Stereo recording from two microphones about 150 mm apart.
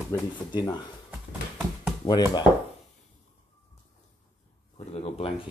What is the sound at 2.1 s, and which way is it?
Speech, 25° left (ahead or behind).